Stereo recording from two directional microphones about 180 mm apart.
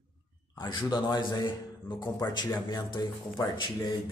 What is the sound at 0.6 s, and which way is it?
Speech, 25° left (ahead or behind).